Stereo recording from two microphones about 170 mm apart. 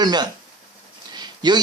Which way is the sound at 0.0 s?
25° right (ahead or behind).